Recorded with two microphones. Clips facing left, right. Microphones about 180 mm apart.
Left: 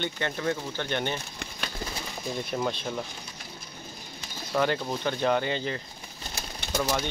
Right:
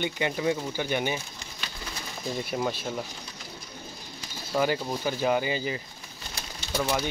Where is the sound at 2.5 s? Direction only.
5° right (ahead or behind).